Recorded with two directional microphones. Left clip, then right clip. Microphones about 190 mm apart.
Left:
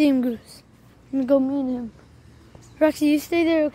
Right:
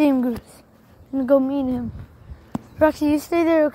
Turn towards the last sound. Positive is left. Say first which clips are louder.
# right 3 dB
turn(degrees=-5)  # may be behind; listen again after turning